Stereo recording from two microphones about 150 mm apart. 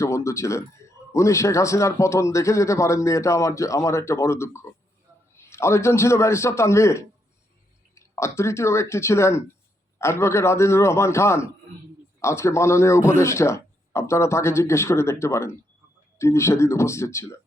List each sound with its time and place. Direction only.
0.0 s speech: 20° left (ahead or behind)